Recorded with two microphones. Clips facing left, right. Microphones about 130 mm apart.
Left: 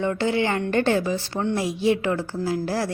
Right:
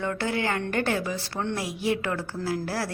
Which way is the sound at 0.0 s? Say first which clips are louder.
Left 5 dB; 25° left (ahead or behind).